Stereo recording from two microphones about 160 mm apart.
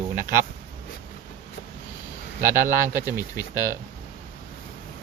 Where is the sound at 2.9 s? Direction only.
15° right (ahead or behind).